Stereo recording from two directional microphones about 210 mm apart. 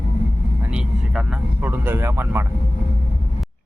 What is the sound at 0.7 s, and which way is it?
Speech, 5° right (ahead or behind).